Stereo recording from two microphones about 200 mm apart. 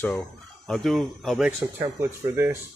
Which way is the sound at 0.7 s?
Centre (ahead or behind).